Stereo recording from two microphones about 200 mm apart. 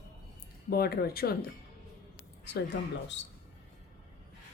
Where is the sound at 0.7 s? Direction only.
50° left (ahead or behind).